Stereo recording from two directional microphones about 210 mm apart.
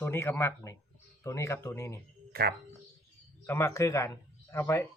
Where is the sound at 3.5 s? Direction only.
15° left (ahead or behind).